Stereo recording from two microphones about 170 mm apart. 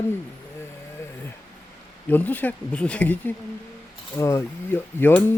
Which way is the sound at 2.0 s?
10° left (ahead or behind).